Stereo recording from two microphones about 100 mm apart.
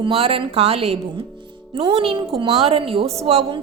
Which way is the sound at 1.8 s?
65° right (ahead or behind).